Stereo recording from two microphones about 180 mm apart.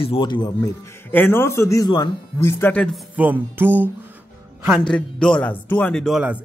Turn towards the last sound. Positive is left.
turn(degrees=5)  # may be behind; listen again after turning